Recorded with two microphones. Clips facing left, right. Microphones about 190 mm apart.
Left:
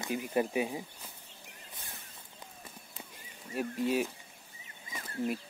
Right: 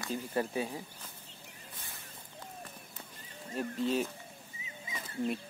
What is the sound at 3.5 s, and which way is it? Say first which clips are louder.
Speech: left 1 dB; 10° left (ahead or behind).